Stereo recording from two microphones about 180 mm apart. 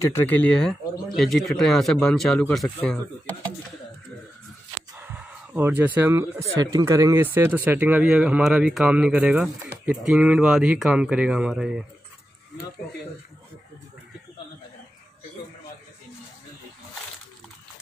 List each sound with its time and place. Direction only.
0.0 s speech: 10° left (ahead or behind)
4.7 s a sound: 10° right (ahead or behind)
6.5 s speech: 20° right (ahead or behind)